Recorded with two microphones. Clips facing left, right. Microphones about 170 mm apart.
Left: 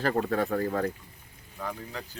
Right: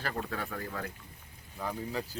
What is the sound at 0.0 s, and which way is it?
Speech, 45° left (ahead or behind).